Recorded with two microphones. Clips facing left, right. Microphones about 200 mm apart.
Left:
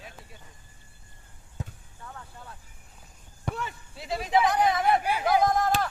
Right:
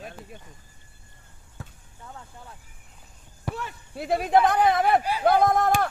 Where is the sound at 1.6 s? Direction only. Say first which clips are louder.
Left 4 dB; 20° left (ahead or behind).